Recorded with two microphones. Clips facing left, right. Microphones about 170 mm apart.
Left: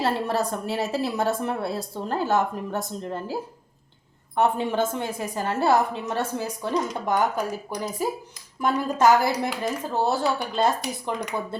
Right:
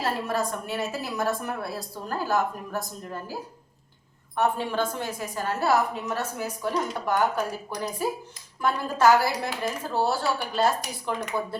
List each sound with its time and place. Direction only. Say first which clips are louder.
0.0 s a woman's voice: left 3 dB; 30° left (ahead or behind)
4.4 s a woman's voice: left 3 dB; 20° left (ahead or behind)